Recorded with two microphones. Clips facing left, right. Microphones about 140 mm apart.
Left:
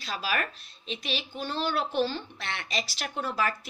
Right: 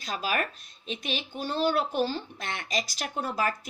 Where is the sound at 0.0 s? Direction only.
45° right (ahead or behind).